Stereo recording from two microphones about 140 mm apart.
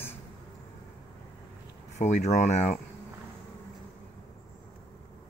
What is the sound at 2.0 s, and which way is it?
Speech, 55° left (ahead or behind).